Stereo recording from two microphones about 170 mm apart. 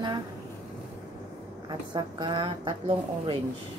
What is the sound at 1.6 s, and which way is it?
A woman's voice, 25° right (ahead or behind).